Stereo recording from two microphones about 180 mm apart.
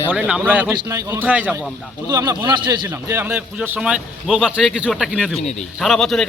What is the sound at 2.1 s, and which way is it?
A man's voice, 20° right (ahead or behind).